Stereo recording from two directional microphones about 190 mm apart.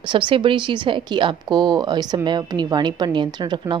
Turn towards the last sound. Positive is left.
turn(degrees=-25)  # may be behind; listen again after turning